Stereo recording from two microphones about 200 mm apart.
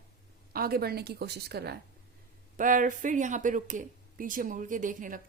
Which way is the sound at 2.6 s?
40° right (ahead or behind).